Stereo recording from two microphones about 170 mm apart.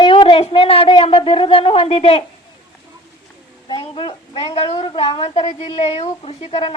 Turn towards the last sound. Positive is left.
turn(degrees=35)  # may be behind; listen again after turning